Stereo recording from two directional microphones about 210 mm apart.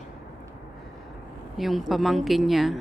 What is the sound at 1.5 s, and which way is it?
Speech, centre (ahead or behind).